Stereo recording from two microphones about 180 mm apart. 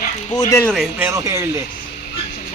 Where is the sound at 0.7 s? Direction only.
Centre (ahead or behind).